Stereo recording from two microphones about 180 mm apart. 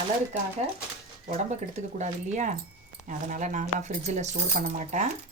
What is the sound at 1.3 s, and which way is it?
Speech, 40° right (ahead or behind).